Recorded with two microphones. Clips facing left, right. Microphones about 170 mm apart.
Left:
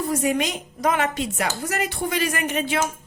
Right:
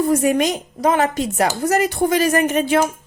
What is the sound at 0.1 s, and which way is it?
Speech, 50° right (ahead or behind).